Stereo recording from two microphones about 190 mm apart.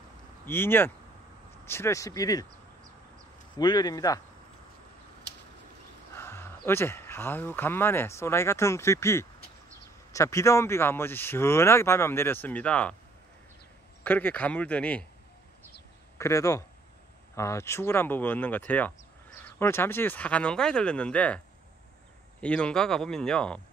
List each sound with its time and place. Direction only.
0.5 s speech: 10° left (ahead or behind)
3.5 s speech: 20° left (ahead or behind)
6.1 s speech: 10° left (ahead or behind)
14.0 s speech: 10° left (ahead or behind)
16.2 s speech: 15° left (ahead or behind)
22.4 s speech: 5° left (ahead or behind)